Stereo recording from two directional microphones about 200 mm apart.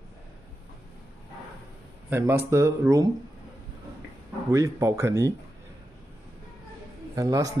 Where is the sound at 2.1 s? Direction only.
15° right (ahead or behind).